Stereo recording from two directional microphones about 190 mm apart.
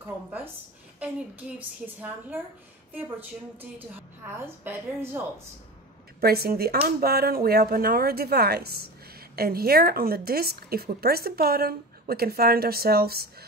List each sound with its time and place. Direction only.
0.0 s a woman's voice: 10° right (ahead or behind)
2.0 s a woman's voice: 10° right (ahead or behind)
4.3 s a woman's voice: 10° right (ahead or behind)
6.2 s a woman's voice: 55° right (ahead or behind)